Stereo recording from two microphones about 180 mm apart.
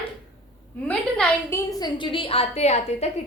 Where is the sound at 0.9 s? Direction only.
5° left (ahead or behind).